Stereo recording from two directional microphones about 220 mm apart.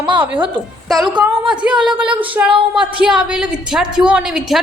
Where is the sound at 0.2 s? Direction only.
5° right (ahead or behind).